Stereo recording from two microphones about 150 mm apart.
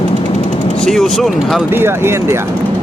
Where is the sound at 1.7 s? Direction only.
15° right (ahead or behind).